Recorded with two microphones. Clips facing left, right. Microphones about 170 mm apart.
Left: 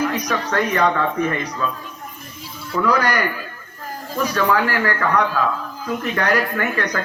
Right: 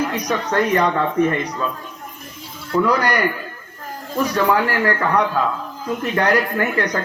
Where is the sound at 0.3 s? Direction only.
20° right (ahead or behind).